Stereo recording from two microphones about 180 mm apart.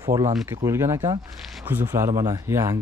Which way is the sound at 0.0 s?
20° right (ahead or behind).